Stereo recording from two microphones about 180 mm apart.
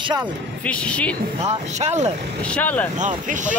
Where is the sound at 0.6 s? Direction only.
5° left (ahead or behind).